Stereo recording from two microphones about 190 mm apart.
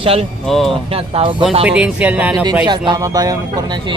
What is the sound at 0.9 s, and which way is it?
Speech, 30° right (ahead or behind).